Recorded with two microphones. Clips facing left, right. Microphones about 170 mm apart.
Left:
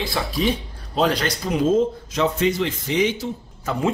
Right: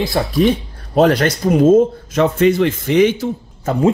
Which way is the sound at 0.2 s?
40° right (ahead or behind).